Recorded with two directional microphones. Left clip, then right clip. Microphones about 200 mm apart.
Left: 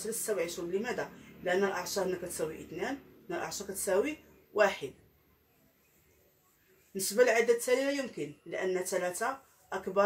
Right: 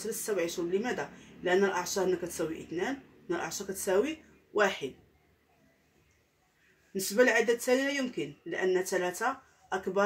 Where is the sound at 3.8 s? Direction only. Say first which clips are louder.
Right 1 dB; 35° right (ahead or behind).